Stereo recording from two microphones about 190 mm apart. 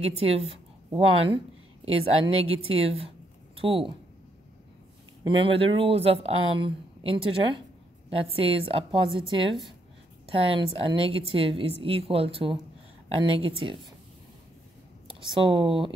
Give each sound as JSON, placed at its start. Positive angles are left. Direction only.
{"t": 0.0, "sound": "speech", "side_deg": -30}
{"t": 5.2, "sound": "speech", "side_deg": -25}
{"t": 15.0, "sound": "speech", "side_deg": -25}